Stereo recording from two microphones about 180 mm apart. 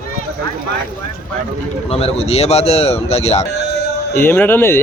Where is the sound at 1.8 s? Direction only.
35° left (ahead or behind).